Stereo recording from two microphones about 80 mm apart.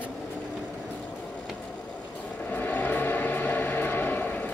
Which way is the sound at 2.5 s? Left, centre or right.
Left.